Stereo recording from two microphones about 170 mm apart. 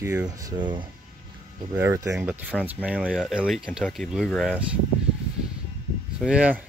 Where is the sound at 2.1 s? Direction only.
5° right (ahead or behind).